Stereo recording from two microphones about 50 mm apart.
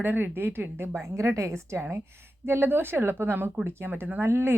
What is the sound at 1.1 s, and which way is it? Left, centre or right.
Speech, right.